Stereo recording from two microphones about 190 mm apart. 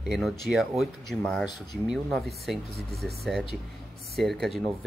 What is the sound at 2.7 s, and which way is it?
Speech, 55° right (ahead or behind).